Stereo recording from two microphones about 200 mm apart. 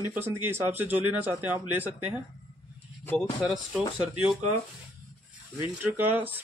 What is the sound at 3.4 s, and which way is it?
Speech, centre (ahead or behind).